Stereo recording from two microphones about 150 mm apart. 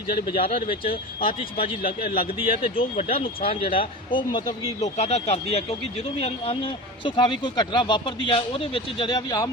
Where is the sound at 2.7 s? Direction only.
40° left (ahead or behind).